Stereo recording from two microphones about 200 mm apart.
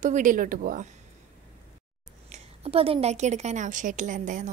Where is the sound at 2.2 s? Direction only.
30° right (ahead or behind).